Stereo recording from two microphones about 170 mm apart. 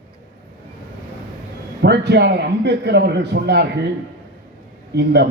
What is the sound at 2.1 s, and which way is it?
A man's voice, 80° right.